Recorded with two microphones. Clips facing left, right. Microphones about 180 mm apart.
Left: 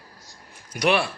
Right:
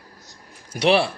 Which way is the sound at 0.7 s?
30° right (ahead or behind).